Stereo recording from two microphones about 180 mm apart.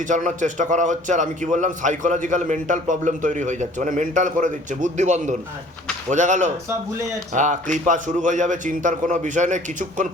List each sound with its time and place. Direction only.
0.1 s a man's voice: 45° right (ahead or behind)